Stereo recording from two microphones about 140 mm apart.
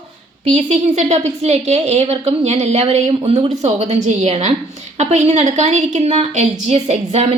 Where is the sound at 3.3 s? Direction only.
25° right (ahead or behind).